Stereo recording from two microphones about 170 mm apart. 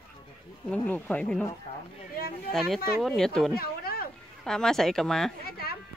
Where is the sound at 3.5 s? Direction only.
65° left (ahead or behind).